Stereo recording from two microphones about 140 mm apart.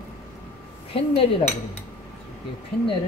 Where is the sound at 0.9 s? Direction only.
40° left (ahead or behind).